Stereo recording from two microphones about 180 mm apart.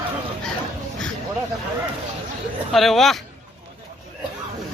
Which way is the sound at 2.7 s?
Centre (ahead or behind).